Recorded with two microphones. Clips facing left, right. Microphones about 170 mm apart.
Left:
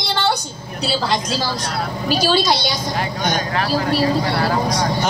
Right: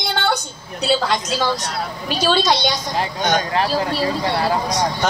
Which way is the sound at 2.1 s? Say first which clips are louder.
Even; 10° left (ahead or behind).